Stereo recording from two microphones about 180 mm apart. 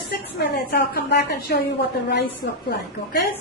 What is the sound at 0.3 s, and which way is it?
A woman's voice, 65° left (ahead or behind).